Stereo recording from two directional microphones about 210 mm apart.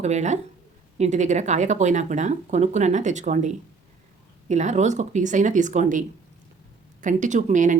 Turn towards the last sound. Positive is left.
turn(degrees=-35)  # may be behind; listen again after turning